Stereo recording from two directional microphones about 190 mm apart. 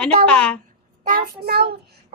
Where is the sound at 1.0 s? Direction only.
50° right (ahead or behind).